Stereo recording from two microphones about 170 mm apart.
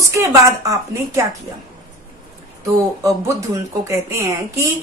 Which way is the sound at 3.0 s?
20° right (ahead or behind).